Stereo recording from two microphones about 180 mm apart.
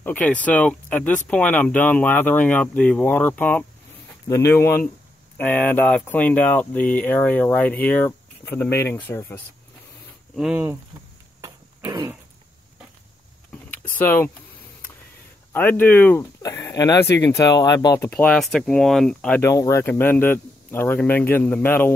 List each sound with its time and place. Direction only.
0.0 s speech: 10° left (ahead or behind)
10.3 s speech: 5° right (ahead or behind)
11.9 s speech: 15° right (ahead or behind)
13.9 s speech: 10° left (ahead or behind)
15.5 s speech: 10° left (ahead or behind)
19.5 s speech: 15° left (ahead or behind)